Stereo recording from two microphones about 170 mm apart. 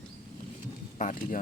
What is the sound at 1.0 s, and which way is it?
Speech, 50° left (ahead or behind).